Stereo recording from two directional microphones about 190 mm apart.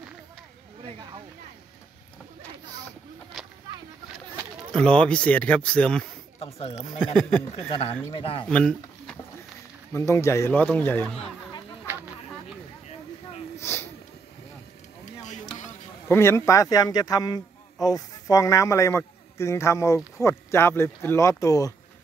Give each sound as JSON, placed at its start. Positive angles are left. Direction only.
{"t": 4.7, "sound": "speech", "side_deg": 5}
{"t": 7.5, "sound": "a man's voice", "side_deg": 30}
{"t": 8.5, "sound": "a man's voice", "side_deg": 5}
{"t": 13.6, "sound": "a sound", "side_deg": 15}
{"t": 16.1, "sound": "a man's voice", "side_deg": 15}